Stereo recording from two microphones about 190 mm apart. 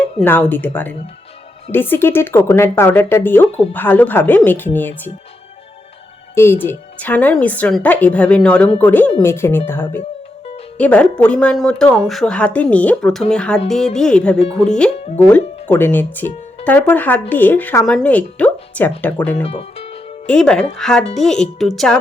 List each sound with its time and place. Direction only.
0.2 s speech: 10° left (ahead or behind)
6.3 s speech: 15° left (ahead or behind)
19.4 s speech: 30° left (ahead or behind)
20.2 s speech: 5° left (ahead or behind)